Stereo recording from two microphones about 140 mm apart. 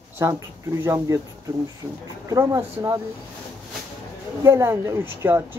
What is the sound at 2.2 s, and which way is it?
Speech, 20° right (ahead or behind).